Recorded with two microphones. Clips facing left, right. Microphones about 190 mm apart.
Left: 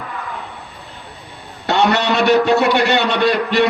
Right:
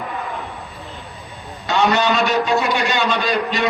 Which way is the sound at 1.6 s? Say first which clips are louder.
Left 1 dB; 65° left (ahead or behind).